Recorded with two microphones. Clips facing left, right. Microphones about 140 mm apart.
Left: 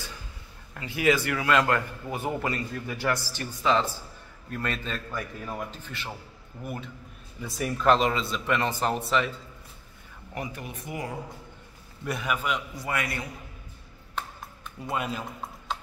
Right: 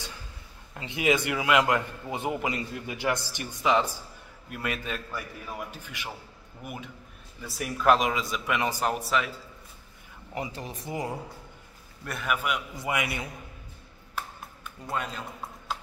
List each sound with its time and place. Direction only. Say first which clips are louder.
0.7 s a man's voice: left 1 dB; 20° right (ahead or behind)
10.3 s a man's voice: right 1 dB; 20° right (ahead or behind)
10.6 s speech: right 2 dB; 35° right (ahead or behind)
12.0 s a man's voice: left 1 dB; centre (ahead or behind)
12.7 s a man's voice: right 1 dB; 20° right (ahead or behind)
14.9 s a man's voice: left 2 dB; 5° left (ahead or behind)